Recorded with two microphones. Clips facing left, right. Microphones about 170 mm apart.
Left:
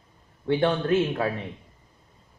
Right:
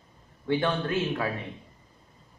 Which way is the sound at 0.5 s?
25° left (ahead or behind).